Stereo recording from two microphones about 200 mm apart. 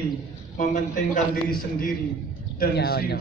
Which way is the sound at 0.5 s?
40° left (ahead or behind).